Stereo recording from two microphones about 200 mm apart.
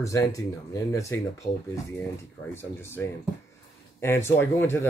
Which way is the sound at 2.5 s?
10° left (ahead or behind).